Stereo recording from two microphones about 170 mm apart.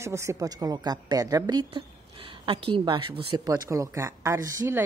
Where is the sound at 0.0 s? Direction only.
15° right (ahead or behind).